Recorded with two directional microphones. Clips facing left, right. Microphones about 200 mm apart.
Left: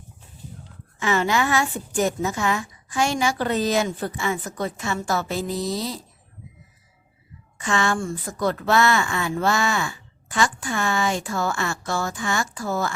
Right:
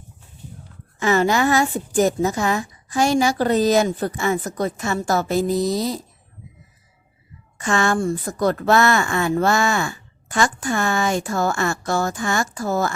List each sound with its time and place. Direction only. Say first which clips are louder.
0.9 s a woman's voice: right 4 dB; 40° right (ahead or behind)
7.6 s speech: right 4 dB; 45° right (ahead or behind)